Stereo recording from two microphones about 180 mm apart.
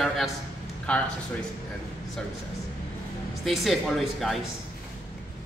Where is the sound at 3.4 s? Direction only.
Centre (ahead or behind).